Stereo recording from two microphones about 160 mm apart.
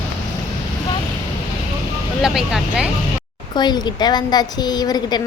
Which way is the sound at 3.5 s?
25° left (ahead or behind).